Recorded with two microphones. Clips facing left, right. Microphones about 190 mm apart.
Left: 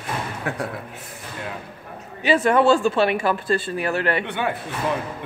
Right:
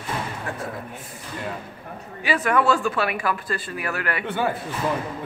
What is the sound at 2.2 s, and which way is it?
Speech, 25° left (ahead or behind).